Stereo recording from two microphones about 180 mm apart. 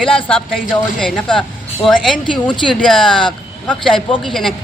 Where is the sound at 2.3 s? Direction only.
25° left (ahead or behind).